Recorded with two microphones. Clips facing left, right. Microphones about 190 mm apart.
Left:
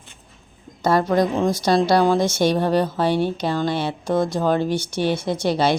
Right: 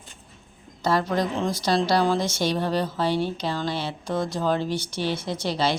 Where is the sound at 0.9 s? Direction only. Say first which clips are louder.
Left 5 dB; 50° left (ahead or behind).